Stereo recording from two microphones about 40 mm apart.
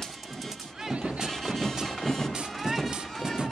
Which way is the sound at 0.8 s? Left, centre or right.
Right.